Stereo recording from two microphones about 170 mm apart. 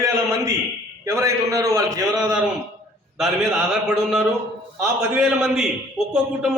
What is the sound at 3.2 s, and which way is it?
A man's voice, centre (ahead or behind).